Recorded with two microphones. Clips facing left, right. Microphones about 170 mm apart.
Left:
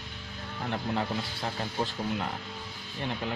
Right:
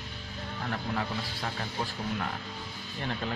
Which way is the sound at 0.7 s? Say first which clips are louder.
Left 3 dB; 25° left (ahead or behind).